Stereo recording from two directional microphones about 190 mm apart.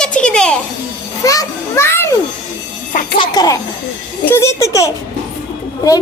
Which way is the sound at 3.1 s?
25° left (ahead or behind).